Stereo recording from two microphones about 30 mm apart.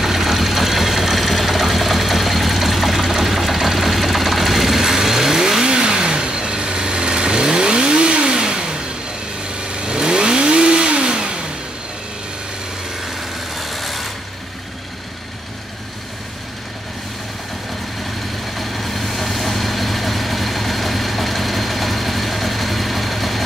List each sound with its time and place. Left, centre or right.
0.0 s a sound: centre
5.7 s vehicle: right
13.0 s light engine: centre
18.5 s vehicle: centre